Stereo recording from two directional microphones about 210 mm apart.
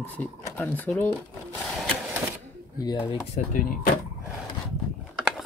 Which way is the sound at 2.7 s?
20° left (ahead or behind).